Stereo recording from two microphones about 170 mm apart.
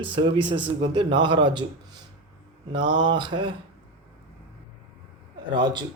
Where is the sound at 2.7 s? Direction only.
25° right (ahead or behind).